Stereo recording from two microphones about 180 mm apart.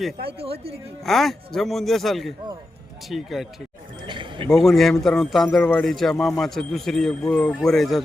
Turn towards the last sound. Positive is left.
turn(degrees=0)  # may be behind; listen again after turning